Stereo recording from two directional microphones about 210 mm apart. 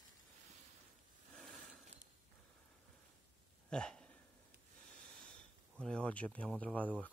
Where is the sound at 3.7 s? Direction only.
5° left (ahead or behind).